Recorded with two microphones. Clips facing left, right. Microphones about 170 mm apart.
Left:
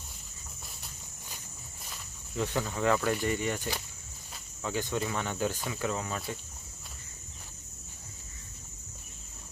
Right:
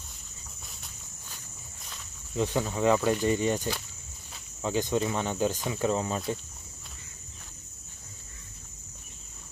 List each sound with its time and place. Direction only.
2.3 s speech: 15° right (ahead or behind)